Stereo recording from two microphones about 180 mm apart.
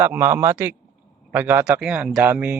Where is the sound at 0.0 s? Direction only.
10° right (ahead or behind).